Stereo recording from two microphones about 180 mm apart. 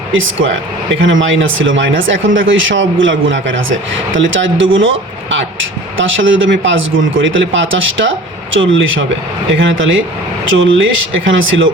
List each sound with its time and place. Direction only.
0.1 s speech: 90° right